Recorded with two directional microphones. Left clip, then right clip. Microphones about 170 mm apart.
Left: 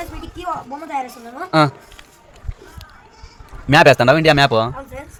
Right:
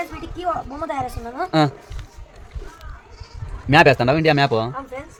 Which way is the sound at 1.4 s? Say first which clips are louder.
Left 3 dB; 5° left (ahead or behind).